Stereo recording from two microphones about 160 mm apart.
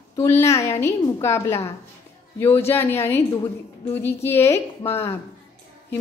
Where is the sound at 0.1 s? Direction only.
20° left (ahead or behind).